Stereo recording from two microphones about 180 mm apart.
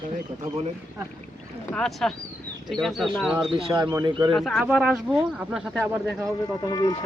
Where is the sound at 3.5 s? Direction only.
30° right (ahead or behind).